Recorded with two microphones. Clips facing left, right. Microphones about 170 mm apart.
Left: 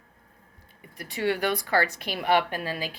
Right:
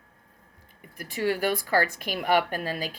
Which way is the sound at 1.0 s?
40° right (ahead or behind).